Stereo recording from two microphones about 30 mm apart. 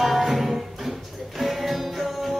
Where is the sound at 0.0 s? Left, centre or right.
Centre.